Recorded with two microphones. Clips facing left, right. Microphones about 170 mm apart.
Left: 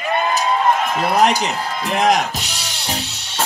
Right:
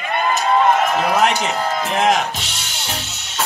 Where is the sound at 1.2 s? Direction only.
35° left (ahead or behind).